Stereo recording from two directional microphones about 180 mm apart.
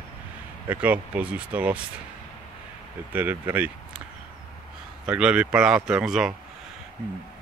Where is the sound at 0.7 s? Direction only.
10° right (ahead or behind).